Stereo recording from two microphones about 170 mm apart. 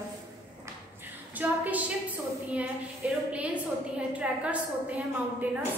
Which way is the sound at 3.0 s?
10° right (ahead or behind).